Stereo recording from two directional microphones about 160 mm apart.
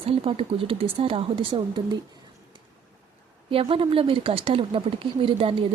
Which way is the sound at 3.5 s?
35° right (ahead or behind).